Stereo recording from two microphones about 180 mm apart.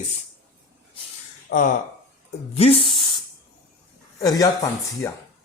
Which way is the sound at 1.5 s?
90° left.